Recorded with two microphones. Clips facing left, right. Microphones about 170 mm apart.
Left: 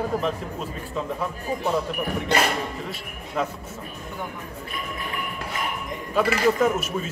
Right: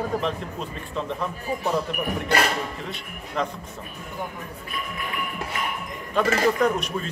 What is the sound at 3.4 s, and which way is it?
Speech, 5° left (ahead or behind).